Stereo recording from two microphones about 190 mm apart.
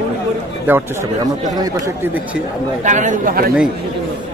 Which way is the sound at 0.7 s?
10° right (ahead or behind).